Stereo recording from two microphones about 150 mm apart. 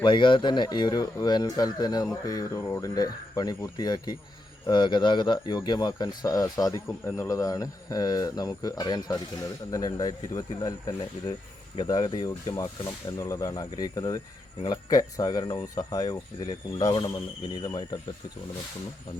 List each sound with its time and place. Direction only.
0.0 s speech: 30° left (ahead or behind)